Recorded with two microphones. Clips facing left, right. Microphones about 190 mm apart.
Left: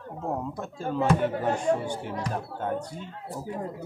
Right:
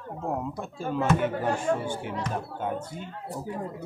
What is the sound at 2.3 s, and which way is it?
Speech, 5° right (ahead or behind).